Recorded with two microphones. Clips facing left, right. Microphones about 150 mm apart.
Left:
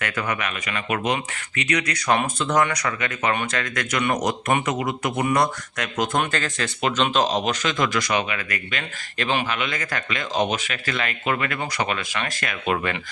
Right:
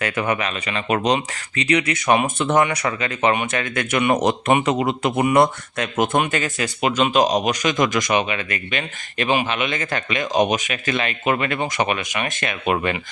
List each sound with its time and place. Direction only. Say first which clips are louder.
0.0 s speech: right 4 dB; 25° right (ahead or behind)
6.3 s speech: right 3 dB; 15° right (ahead or behind)